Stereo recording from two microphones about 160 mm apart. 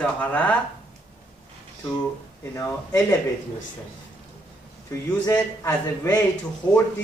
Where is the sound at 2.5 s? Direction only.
20° left (ahead or behind).